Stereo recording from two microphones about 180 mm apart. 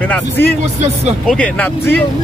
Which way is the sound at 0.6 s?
35° right (ahead or behind).